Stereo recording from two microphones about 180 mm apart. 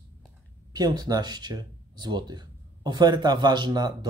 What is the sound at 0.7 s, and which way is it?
Speech, 20° right (ahead or behind).